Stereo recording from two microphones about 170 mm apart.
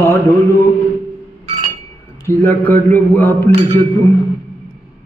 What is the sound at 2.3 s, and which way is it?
Mantra, 10° left (ahead or behind).